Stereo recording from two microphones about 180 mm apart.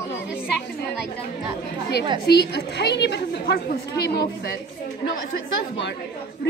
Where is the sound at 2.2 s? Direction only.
65° left (ahead or behind).